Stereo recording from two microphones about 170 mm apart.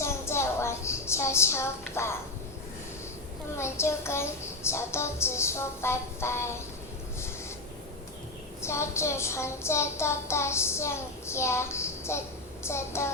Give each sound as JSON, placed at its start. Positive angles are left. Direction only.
{"t": 0.0, "sound": "a sound", "side_deg": 15}
{"t": 3.6, "sound": "child singing", "side_deg": 15}
{"t": 8.6, "sound": "child singing", "side_deg": 15}